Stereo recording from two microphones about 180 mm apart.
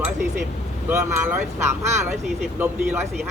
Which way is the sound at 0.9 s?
10° right (ahead or behind).